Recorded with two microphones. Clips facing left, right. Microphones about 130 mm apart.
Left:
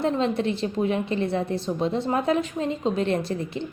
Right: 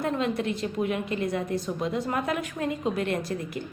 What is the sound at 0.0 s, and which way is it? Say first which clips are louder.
A woman's voice: left 4 dB; 30° left (ahead or behind).